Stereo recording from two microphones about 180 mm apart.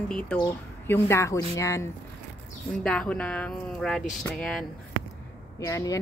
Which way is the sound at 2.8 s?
5° left (ahead or behind).